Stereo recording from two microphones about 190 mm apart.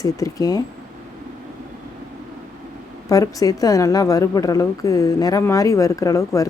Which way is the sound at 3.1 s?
20° left (ahead or behind).